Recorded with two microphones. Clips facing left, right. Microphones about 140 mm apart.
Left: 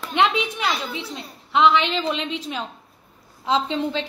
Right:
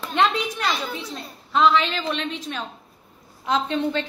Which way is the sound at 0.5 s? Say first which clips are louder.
Even; 10° left (ahead or behind).